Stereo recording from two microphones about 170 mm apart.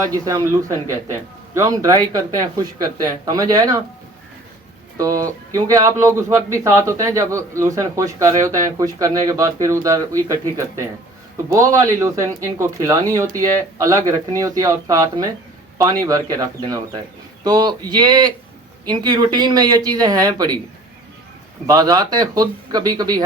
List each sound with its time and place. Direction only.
0.0 s speech: 20° right (ahead or behind)
4.9 s speech: 20° right (ahead or behind)
11.4 s speech: 20° right (ahead or behind)
21.7 s speech: 20° right (ahead or behind)